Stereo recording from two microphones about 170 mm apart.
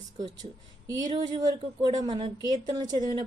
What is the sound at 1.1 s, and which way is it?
Speech, 25° right (ahead or behind).